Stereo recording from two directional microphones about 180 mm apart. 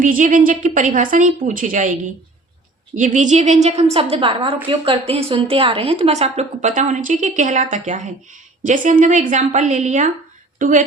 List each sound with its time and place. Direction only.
0.0 s a woman's voice: 45° right (ahead or behind)